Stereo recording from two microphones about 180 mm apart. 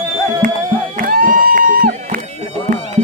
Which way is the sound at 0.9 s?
50° right (ahead or behind).